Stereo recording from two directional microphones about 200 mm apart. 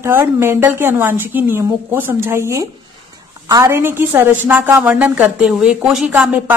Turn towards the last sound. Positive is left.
turn(degrees=-5)  # may be behind; listen again after turning